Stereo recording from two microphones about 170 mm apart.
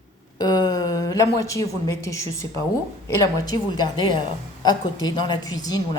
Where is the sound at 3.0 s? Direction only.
25° left (ahead or behind).